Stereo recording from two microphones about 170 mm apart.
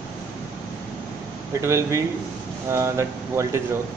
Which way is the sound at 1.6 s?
15° right (ahead or behind).